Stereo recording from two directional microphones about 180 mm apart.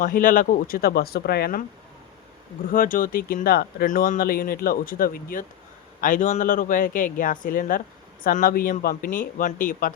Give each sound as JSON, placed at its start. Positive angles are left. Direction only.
{"t": 0.0, "sound": "speech", "side_deg": 50}
{"t": 2.7, "sound": "speech", "side_deg": 50}